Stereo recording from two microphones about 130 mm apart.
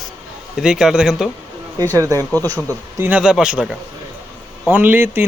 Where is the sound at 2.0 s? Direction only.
25° right (ahead or behind).